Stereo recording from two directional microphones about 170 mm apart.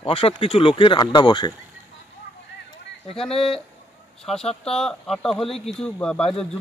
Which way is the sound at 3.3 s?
35° left (ahead or behind).